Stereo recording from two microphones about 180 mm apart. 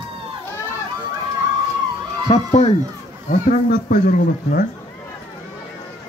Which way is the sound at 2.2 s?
35° left (ahead or behind).